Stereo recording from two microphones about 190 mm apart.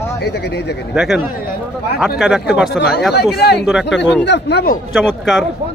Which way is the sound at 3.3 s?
60° left (ahead or behind).